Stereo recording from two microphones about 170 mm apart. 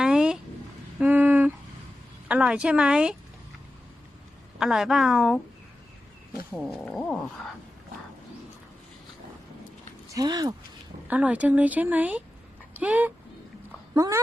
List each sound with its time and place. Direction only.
0.0 s a sound: 5° right (ahead or behind)
2.2 s speech: 5° right (ahead or behind)
4.5 s speech: 5° right (ahead or behind)
6.5 s speech: centre (ahead or behind)
10.2 s speech: 25° right (ahead or behind)
11.1 s speech: 10° right (ahead or behind)